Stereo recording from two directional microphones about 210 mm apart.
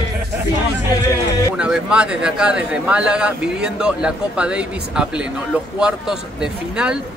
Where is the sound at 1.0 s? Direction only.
15° left (ahead or behind).